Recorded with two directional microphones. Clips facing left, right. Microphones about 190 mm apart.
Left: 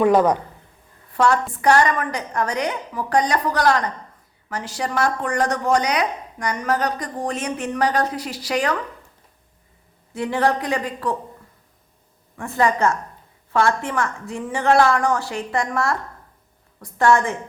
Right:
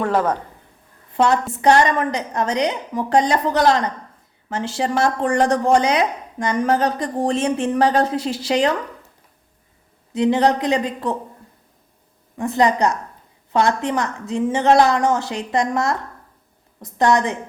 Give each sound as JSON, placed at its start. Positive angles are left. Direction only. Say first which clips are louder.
{"t": 0.0, "sound": "a man's voice", "louder": "left 4 dB", "side_deg": 15}
{"t": 1.1, "sound": "speech", "louder": "right 1 dB", "side_deg": -20}
{"t": 10.1, "sound": "speech", "louder": "right 4 dB", "side_deg": -20}
{"t": 12.4, "sound": "speech", "louder": "right 2 dB", "side_deg": -20}